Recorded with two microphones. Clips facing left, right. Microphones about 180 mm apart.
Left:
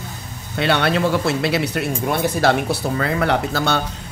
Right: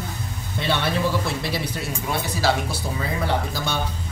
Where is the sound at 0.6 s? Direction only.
70° left (ahead or behind).